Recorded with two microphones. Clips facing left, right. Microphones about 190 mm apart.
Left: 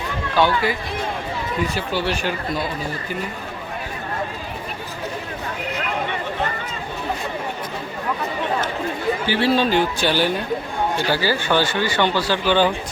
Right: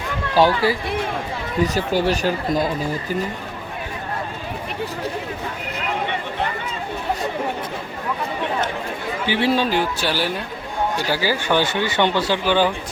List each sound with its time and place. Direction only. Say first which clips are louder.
0.3 s speech: right 3 dB; 35° right (ahead or behind)
9.2 s speech: even; 20° right (ahead or behind)